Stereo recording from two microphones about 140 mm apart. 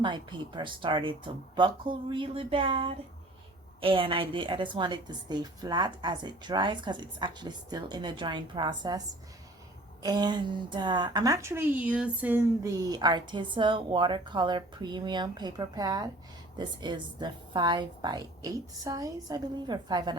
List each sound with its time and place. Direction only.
0.0 s a woman's voice: 35° right (ahead or behind)
10.0 s a woman's voice: 30° right (ahead or behind); by 12.5 s 10° right (ahead or behind)
12.6 s a woman's voice: 25° right (ahead or behind)